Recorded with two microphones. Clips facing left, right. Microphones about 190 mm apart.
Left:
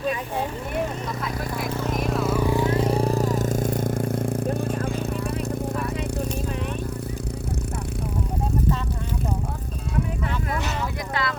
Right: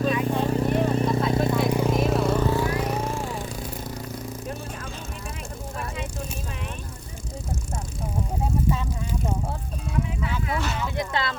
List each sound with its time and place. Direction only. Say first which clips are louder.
0.4 s vehicle: right 5 dB; 35° right (ahead or behind); by 2.0 s 15° right (ahead or behind)
2.0 s vehicle: right 1 dB; centre (ahead or behind); by 4.4 s 50° left (ahead or behind)
10.9 s vehicle: right 1 dB; 25° right (ahead or behind)